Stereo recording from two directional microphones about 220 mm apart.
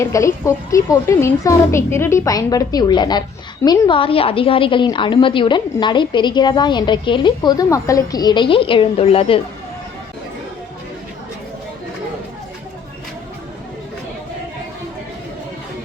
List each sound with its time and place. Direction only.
0.0 s speech: 15° left (ahead or behind)